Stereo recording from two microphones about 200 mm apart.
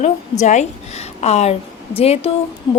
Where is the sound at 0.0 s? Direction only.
35° left (ahead or behind).